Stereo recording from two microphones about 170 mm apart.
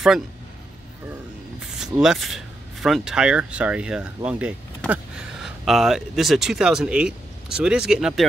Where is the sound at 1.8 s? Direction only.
5° right (ahead or behind).